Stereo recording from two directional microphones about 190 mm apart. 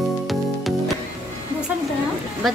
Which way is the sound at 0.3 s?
Centre (ahead or behind).